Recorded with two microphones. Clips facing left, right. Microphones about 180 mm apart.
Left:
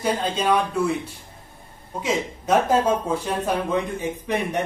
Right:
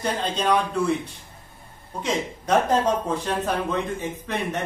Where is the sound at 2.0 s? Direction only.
5° left (ahead or behind).